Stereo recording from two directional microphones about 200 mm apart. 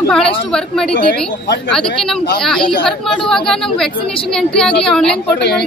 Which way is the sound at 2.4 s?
Centre (ahead or behind).